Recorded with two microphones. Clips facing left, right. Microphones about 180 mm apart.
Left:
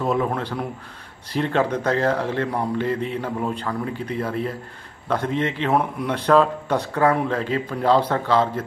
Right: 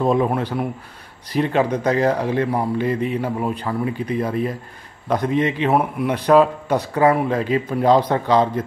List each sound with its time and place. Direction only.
0.0 s a man's voice: 20° right (ahead or behind)